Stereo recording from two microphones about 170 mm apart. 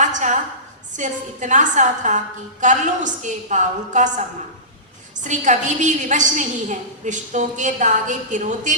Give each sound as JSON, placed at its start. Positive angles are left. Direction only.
{"t": 0.0, "sound": "a sound", "side_deg": -45}
{"t": 0.9, "sound": "a woman's voice", "side_deg": -45}
{"t": 5.2, "sound": "a woman's voice", "side_deg": -45}